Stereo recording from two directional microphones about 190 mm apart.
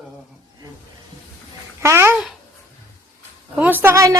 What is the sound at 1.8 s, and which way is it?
Speech, 15° right (ahead or behind).